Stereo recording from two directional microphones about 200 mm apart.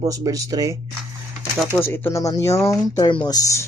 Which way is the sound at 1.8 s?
10° left (ahead or behind).